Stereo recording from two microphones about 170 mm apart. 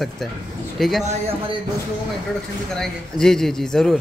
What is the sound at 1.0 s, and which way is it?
Speech, 35° right (ahead or behind).